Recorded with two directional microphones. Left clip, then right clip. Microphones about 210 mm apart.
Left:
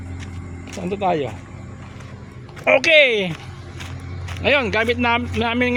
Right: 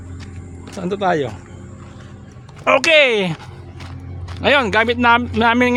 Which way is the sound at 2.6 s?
20° right (ahead or behind).